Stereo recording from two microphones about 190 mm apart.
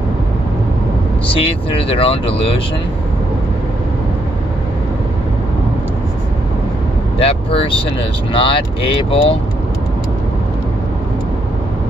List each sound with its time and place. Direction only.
1.3 s speech: 30° left (ahead or behind)
7.2 s speech: 30° left (ahead or behind)